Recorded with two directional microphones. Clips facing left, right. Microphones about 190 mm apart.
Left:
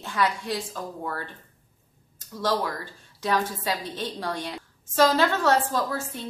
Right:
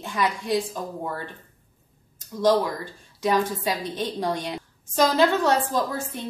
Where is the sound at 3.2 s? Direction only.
15° right (ahead or behind).